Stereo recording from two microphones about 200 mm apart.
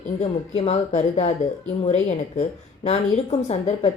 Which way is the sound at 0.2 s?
30° left (ahead or behind).